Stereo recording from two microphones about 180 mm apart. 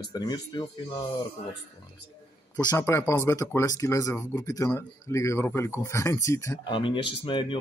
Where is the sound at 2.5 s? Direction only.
15° left (ahead or behind).